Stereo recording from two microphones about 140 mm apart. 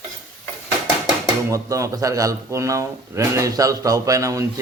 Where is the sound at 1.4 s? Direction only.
20° right (ahead or behind).